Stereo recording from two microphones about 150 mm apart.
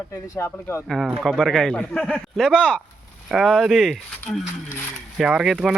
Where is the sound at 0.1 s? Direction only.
15° left (ahead or behind).